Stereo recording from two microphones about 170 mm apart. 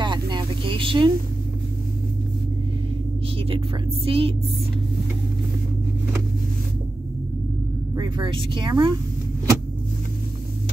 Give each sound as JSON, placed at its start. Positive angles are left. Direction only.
{"t": 0.0, "sound": "vehicle", "side_deg": -25}
{"t": 3.4, "sound": "speech", "side_deg": -35}
{"t": 7.9, "sound": "speech", "side_deg": -25}